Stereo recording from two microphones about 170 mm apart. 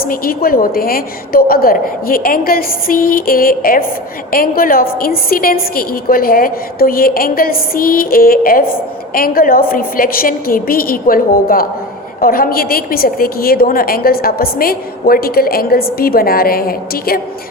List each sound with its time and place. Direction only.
0.0 s a woman's voice: 60° left (ahead or behind)